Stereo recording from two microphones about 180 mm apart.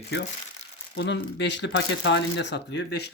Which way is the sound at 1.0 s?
75° left (ahead or behind).